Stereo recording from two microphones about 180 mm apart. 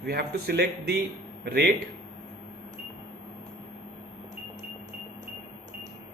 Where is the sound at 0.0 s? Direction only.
65° right (ahead or behind).